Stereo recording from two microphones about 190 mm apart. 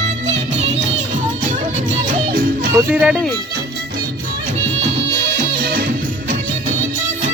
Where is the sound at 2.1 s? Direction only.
50° right (ahead or behind).